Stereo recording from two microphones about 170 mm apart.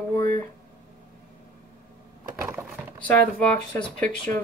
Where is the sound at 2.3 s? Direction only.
15° right (ahead or behind).